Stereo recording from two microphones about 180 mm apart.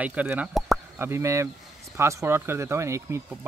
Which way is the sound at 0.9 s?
15° right (ahead or behind).